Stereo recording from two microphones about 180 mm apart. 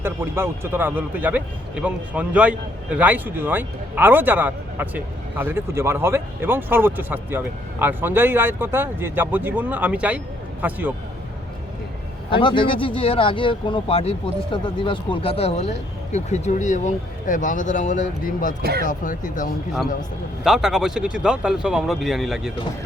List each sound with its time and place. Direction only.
0.0 s speech: 10° right (ahead or behind)
12.3 s speech: 25° left (ahead or behind); by 18.5 s 50° left (ahead or behind)
18.6 s speech: 60° right (ahead or behind)
18.9 s speech: 45° left (ahead or behind)
20.4 s speech: 5° right (ahead or behind)